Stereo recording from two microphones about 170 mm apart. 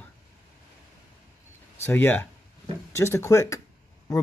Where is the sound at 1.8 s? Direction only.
10° left (ahead or behind).